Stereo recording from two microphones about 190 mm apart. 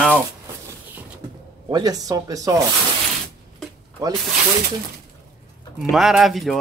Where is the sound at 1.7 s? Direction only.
20° right (ahead or behind).